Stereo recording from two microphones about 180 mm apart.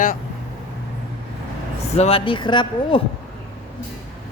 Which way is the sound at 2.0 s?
30° left (ahead or behind).